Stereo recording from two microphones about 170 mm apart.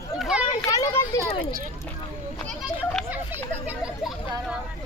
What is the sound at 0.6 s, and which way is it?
Children playing, 20° left (ahead or behind).